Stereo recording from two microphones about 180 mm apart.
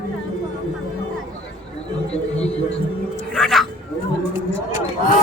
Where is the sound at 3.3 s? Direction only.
Centre (ahead or behind).